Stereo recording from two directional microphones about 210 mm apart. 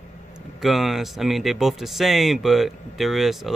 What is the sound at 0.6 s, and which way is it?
Speech, centre (ahead or behind).